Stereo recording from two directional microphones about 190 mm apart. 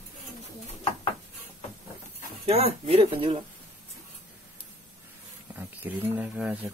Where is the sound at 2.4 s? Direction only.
35° right (ahead or behind).